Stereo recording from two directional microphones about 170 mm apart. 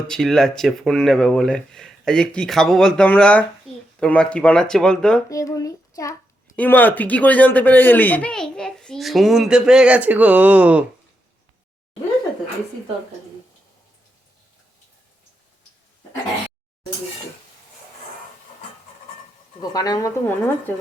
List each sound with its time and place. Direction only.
0.1 s speech: 5° left (ahead or behind)
5.3 s a child's voice: 20° left (ahead or behind)
6.6 s speech: 10° left (ahead or behind); by 10.8 s 10° right (ahead or behind)
19.7 s a woman's voice: 20° left (ahead or behind)